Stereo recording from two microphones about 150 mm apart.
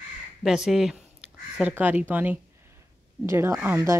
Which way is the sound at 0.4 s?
5° right (ahead or behind).